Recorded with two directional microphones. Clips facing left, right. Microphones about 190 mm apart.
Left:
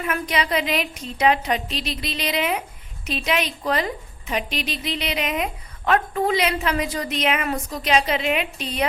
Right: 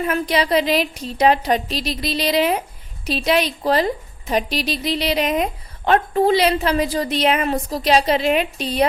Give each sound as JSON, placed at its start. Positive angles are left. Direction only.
{"t": 0.0, "sound": "a woman's voice", "side_deg": -35}